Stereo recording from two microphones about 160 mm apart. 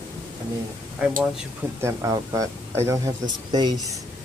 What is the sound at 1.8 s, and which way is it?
Speech, 20° right (ahead or behind).